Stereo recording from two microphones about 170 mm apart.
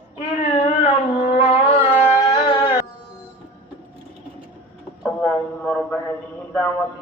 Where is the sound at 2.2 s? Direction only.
25° left (ahead or behind).